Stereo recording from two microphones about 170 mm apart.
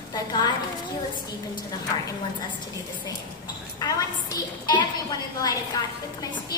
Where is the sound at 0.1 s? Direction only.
25° left (ahead or behind).